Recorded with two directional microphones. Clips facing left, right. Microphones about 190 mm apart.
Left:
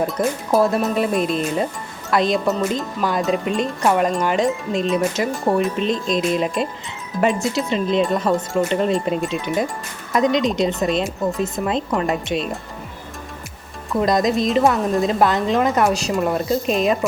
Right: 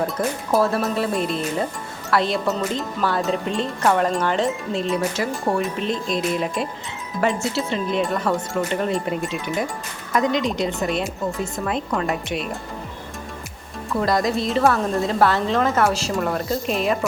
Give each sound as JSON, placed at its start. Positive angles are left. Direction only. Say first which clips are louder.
{"t": 0.2, "sound": "a woman's voice", "louder": "left 3 dB", "side_deg": 15}
{"t": 14.0, "sound": "a woman's voice", "louder": "left 3 dB", "side_deg": 20}